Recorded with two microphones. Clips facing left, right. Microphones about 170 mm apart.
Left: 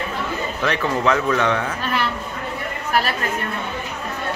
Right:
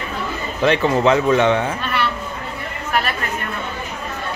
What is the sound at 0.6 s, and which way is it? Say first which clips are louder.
Speech: right 7 dB; 25° right (ahead or behind).